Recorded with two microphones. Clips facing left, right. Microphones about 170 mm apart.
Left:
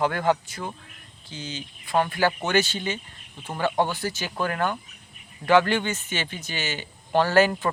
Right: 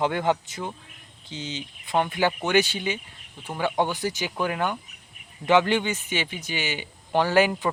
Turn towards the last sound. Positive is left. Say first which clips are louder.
# left 1 dB
turn(degrees=-15)  # may be behind; listen again after turning